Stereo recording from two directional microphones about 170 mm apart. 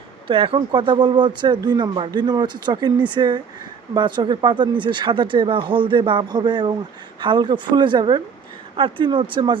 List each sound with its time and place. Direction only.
0.3 s speech: 30° right (ahead or behind)